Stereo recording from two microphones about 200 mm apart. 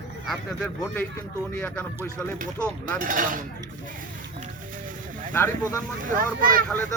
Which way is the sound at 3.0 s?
45° right (ahead or behind).